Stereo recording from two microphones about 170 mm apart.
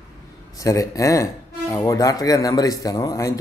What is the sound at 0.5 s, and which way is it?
Speech, 20° left (ahead or behind).